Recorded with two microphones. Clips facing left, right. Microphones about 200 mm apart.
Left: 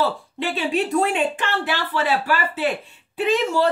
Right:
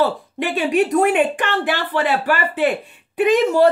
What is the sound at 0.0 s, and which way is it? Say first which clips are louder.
Speech: right 4 dB; 15° right (ahead or behind).